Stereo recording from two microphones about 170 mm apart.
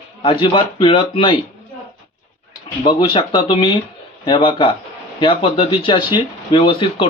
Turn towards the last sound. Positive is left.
turn(degrees=30)  # may be behind; listen again after turning